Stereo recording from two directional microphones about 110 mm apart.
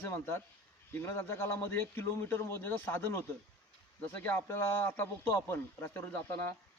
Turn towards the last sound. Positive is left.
turn(degrees=20)  # may be behind; listen again after turning